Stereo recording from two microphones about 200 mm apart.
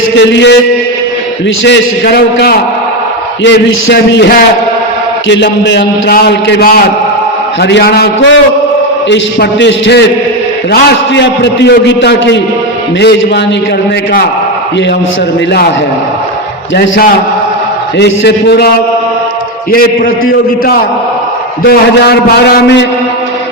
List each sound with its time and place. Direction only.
0.2 s a man's voice: 60° left (ahead or behind)
1.6 s a man's voice: 55° left (ahead or behind)
3.4 s a man's voice: 65° left (ahead or behind)
16.7 s a man's voice: 65° left (ahead or behind)
21.7 s a man's voice: 50° left (ahead or behind)